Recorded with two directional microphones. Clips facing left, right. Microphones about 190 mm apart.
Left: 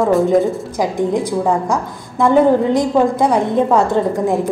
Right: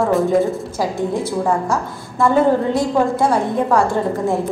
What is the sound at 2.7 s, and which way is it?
A woman's voice, 15° left (ahead or behind).